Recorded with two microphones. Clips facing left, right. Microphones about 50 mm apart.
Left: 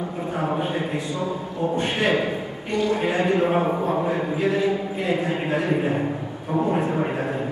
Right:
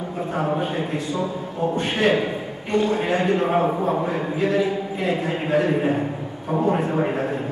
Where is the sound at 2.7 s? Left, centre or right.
Right.